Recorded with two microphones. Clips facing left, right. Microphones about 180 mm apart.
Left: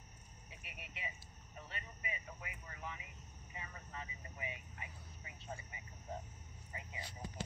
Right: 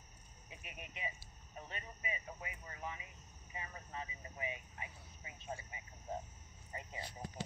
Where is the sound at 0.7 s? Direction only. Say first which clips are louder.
Right 4 dB; 20° right (ahead or behind).